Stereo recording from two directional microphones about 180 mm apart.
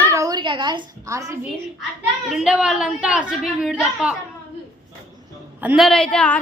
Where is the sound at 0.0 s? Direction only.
15° right (ahead or behind).